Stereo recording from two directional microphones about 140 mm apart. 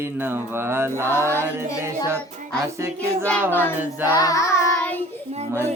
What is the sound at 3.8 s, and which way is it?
Mantra, 15° right (ahead or behind).